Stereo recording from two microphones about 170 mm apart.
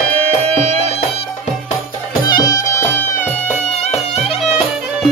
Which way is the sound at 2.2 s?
20° left (ahead or behind).